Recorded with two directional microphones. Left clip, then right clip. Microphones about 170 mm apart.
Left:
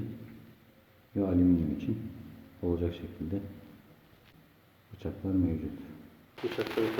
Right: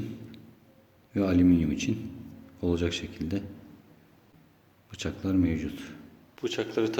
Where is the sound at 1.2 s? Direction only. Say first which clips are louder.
Right 4 dB; 15° right (ahead or behind).